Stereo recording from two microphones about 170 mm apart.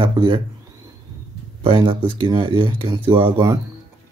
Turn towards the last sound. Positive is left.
turn(degrees=-30)  # may be behind; listen again after turning